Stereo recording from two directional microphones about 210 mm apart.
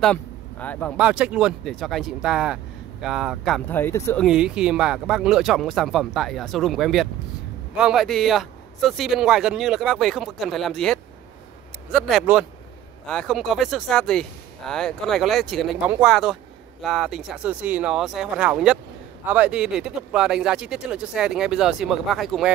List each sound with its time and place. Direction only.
0.0 s speech: 5° left (ahead or behind)
0.9 s speech: 5° right (ahead or behind)
3.6 s speech: 10° left (ahead or behind)
4.3 s speech: 5° right (ahead or behind)